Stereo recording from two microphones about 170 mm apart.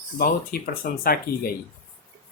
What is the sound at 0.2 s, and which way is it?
Speech, 60° left (ahead or behind).